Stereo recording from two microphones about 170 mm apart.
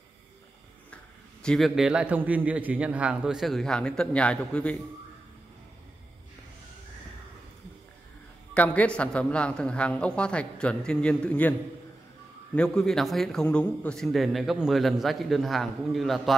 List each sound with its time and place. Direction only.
1.4 s a man's voice: centre (ahead or behind)
8.5 s a man's voice: 10° left (ahead or behind)
12.5 s a man's voice: 5° left (ahead or behind)